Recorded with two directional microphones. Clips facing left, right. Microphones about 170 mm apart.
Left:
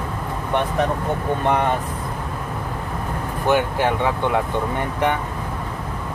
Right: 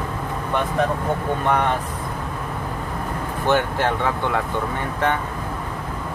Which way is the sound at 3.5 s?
15° left (ahead or behind).